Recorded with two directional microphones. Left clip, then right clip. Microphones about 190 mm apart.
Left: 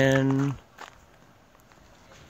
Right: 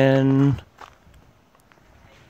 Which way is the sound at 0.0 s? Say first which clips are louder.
Right 4 dB; 35° right (ahead or behind).